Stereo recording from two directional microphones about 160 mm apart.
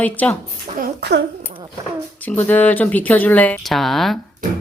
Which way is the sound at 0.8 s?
75° right (ahead or behind).